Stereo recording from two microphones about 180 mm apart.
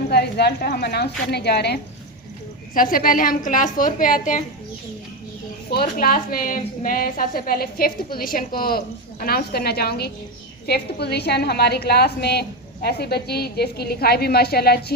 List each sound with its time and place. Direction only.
0.1 s a woman's voice: 65° left (ahead or behind)
2.7 s a woman's voice: 50° left (ahead or behind)
5.7 s a woman's voice: 55° left (ahead or behind)